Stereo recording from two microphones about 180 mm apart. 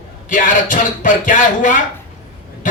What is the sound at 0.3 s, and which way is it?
A man's voice, 45° left (ahead or behind).